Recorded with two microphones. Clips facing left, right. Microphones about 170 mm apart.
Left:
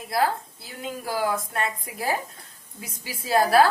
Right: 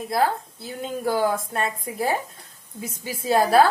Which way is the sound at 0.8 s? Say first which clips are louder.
Right 5 dB; 25° right (ahead or behind).